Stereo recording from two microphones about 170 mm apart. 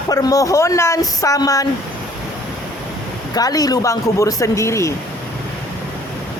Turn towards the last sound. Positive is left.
turn(degrees=15)  # may be behind; listen again after turning